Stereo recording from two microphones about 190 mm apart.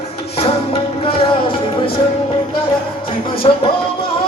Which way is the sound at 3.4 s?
30° left (ahead or behind).